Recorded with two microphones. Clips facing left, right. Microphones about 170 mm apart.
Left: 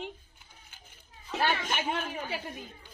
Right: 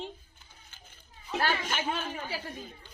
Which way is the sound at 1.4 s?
15° left (ahead or behind).